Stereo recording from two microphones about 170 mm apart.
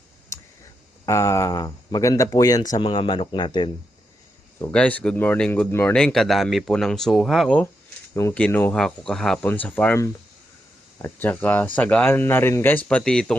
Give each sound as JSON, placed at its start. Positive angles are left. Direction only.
{"t": 1.0, "sound": "speech", "side_deg": 20}
{"t": 4.7, "sound": "speech", "side_deg": 10}
{"t": 8.1, "sound": "speech", "side_deg": 15}